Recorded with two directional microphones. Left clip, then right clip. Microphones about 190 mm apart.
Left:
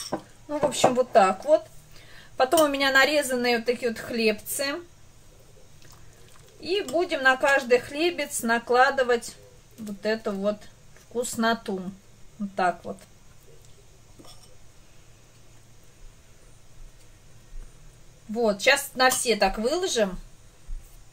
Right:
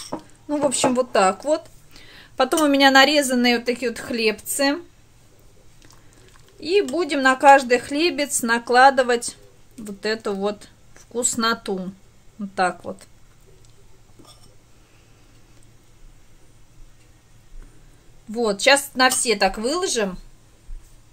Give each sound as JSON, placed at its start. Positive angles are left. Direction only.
{"t": 0.5, "sound": "a woman's voice", "side_deg": -60}
{"t": 7.0, "sound": "speech", "side_deg": -60}
{"t": 18.3, "sound": "a woman's voice", "side_deg": -55}